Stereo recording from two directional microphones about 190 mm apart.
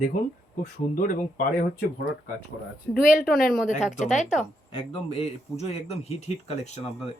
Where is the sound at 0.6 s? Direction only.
45° left (ahead or behind).